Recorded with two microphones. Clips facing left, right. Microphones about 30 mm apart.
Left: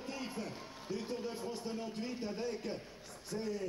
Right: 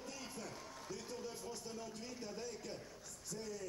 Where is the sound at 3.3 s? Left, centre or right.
Left.